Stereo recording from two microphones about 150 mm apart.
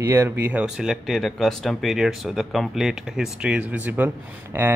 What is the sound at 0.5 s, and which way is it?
Speech, 5° right (ahead or behind).